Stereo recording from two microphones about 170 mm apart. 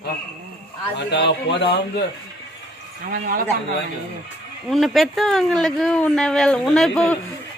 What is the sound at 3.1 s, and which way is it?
Speech, 55° right (ahead or behind).